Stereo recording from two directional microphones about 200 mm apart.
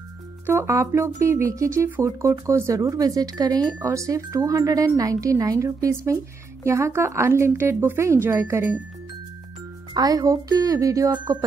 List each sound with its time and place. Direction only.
0.5 s speech: 15° right (ahead or behind)
9.9 s speech: 20° right (ahead or behind)